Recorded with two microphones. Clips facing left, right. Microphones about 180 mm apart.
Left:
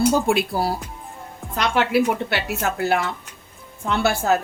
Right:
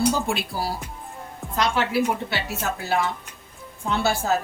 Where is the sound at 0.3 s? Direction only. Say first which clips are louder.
Left 6 dB; 55° left (ahead or behind).